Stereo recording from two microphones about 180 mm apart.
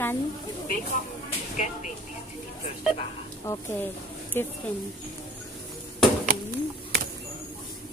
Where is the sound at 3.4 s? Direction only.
15° left (ahead or behind).